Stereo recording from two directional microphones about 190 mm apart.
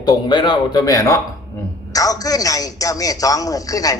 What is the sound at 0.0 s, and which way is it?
A man's voice, 20° left (ahead or behind).